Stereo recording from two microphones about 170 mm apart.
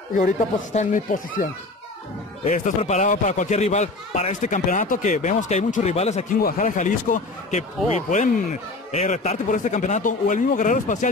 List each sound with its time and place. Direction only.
0.7 s speech: 50° left (ahead or behind)
6.4 s speech: 50° left (ahead or behind)